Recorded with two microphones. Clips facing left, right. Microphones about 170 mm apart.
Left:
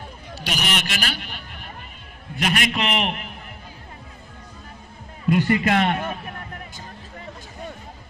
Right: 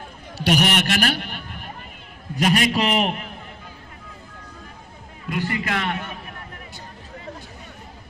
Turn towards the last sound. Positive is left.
turn(degrees=35)  # may be behind; listen again after turning